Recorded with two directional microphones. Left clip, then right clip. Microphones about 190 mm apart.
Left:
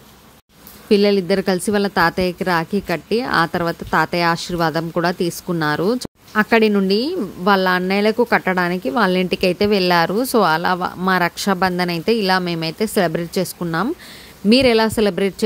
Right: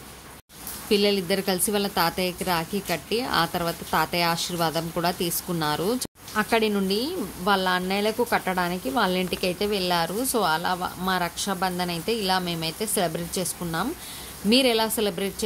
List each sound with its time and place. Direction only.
0.8 s a woman's voice: 40° left (ahead or behind)